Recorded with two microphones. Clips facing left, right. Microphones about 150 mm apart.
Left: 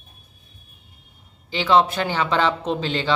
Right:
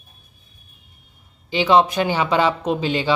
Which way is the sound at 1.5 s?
15° right (ahead or behind).